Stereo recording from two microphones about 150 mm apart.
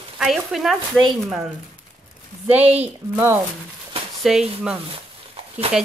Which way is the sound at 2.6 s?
45° right (ahead or behind).